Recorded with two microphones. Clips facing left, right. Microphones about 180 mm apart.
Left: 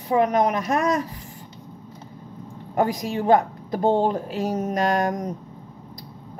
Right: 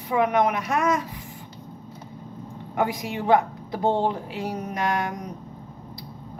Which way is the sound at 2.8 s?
40° left (ahead or behind).